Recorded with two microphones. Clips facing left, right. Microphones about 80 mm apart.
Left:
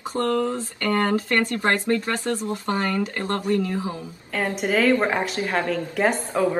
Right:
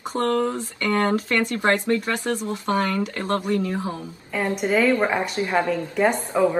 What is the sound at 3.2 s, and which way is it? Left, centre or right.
Speech, right.